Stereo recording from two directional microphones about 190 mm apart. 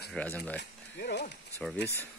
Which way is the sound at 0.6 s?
60° left (ahead or behind).